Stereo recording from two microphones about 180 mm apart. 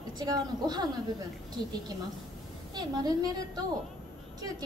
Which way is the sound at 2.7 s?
25° right (ahead or behind).